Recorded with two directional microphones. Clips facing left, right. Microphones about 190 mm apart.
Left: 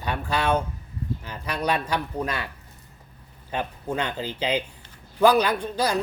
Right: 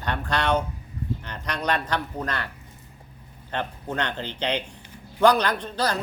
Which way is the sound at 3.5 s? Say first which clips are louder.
Left 1 dB; 10° left (ahead or behind).